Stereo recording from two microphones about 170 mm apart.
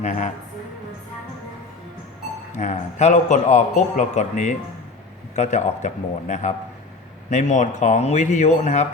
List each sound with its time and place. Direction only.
0.0 s a man's voice: 45° left (ahead or behind)
2.6 s a man's voice: 45° left (ahead or behind)